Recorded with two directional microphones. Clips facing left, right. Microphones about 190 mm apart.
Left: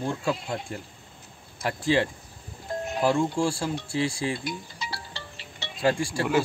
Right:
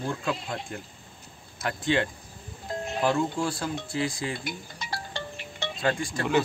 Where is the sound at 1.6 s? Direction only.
5° left (ahead or behind).